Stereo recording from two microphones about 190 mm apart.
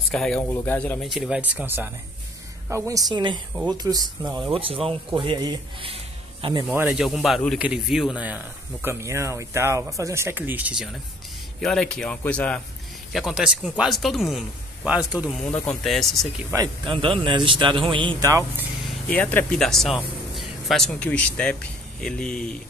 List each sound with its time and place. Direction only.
0.1 s speech: 5° left (ahead or behind)
1.0 s speech: centre (ahead or behind); by 6.6 s 30° right (ahead or behind)
6.7 s speech: 5° right (ahead or behind)
16.5 s speech: 25° right (ahead or behind)
19.0 s speech: 10° left (ahead or behind)